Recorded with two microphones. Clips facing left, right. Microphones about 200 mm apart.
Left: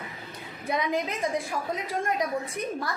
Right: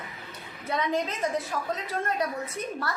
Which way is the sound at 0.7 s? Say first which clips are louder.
Even; 10° left (ahead or behind).